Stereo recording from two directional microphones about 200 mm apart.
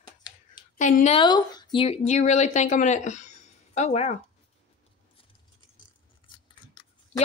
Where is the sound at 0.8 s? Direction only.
40° left (ahead or behind).